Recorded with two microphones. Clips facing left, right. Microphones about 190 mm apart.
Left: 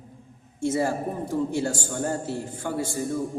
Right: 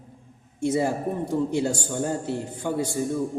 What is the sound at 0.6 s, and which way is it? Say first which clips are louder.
A man's voice: right 1 dB; 20° right (ahead or behind).